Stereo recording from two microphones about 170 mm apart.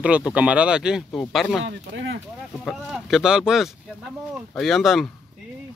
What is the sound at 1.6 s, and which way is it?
Speech, 90° right.